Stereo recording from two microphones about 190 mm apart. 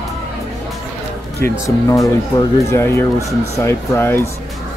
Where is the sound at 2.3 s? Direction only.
15° left (ahead or behind).